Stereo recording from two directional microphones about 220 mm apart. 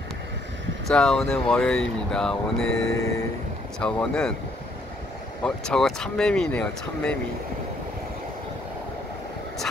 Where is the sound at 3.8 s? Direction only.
5° left (ahead or behind).